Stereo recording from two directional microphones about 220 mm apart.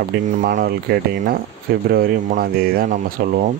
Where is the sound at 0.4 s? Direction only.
40° right (ahead or behind).